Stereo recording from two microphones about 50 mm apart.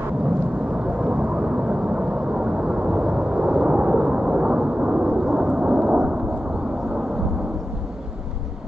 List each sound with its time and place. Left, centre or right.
0.9 s vehicle: centre